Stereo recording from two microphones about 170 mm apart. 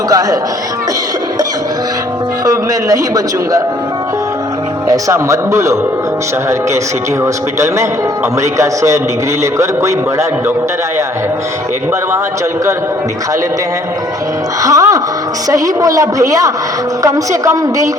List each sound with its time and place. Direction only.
0.1 s a woman's voice: 20° right (ahead or behind)
2.4 s a man's voice: 20° right (ahead or behind)
4.9 s a man's voice: 20° right (ahead or behind)
8.4 s a man's voice: 15° right (ahead or behind)
14.6 s a woman's voice: 20° right (ahead or behind)